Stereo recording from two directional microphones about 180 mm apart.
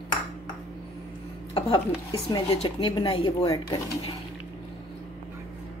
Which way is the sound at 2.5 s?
30° left (ahead or behind).